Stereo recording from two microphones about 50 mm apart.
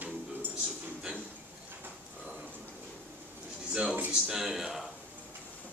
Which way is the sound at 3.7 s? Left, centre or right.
Centre.